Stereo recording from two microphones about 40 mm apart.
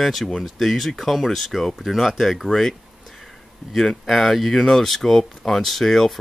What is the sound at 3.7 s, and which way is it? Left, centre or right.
Speech, centre.